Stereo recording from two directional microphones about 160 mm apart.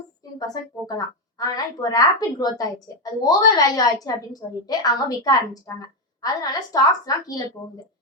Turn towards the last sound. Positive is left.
turn(degrees=25)  # may be behind; listen again after turning